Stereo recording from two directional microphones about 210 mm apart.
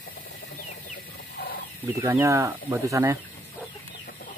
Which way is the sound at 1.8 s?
10° right (ahead or behind).